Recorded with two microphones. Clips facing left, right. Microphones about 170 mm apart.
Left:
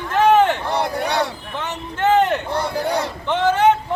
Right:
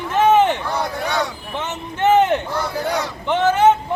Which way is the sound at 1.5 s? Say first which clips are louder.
Right 1 dB; 20° right (ahead or behind).